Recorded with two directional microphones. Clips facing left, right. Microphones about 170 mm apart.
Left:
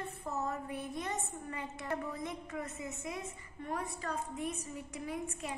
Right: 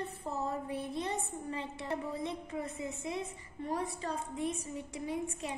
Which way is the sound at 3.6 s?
30° right (ahead or behind).